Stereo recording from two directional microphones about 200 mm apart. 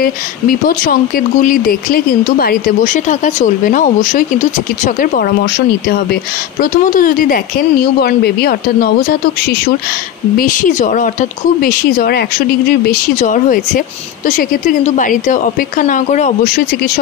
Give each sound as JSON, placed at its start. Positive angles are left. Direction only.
{"t": 0.0, "sound": "speech", "side_deg": 45}
{"t": 6.6, "sound": "speech", "side_deg": 40}
{"t": 10.3, "sound": "speech", "side_deg": 45}